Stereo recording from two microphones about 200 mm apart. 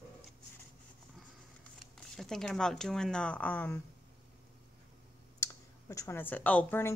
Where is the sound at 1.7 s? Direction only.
Centre (ahead or behind).